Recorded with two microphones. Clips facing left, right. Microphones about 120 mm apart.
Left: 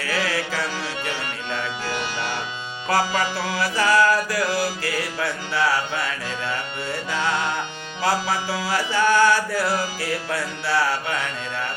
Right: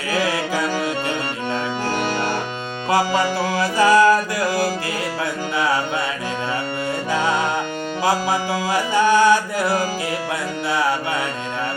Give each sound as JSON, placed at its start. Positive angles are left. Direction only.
{"t": 0.1, "sound": "carnatic music", "side_deg": -20}
{"t": 1.9, "sound": "music", "side_deg": -50}
{"t": 3.5, "sound": "music", "side_deg": -20}
{"t": 8.0, "sound": "mantra", "side_deg": -15}